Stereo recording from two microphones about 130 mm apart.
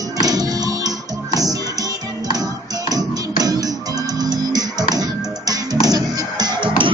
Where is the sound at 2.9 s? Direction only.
30° right (ahead or behind).